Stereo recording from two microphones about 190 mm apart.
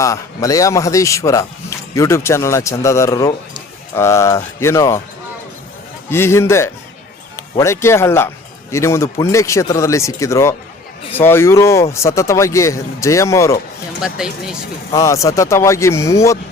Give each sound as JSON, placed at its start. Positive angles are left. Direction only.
{"t": 0.0, "sound": "speech", "side_deg": 15}
{"t": 6.1, "sound": "speech", "side_deg": 15}
{"t": 14.0, "sound": "speech", "side_deg": -5}
{"t": 14.9, "sound": "speech", "side_deg": 15}